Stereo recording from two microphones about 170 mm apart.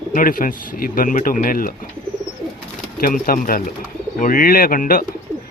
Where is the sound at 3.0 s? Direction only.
55° left (ahead or behind).